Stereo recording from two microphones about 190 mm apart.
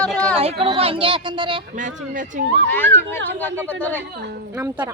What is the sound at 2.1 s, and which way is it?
Speech, 45° right (ahead or behind).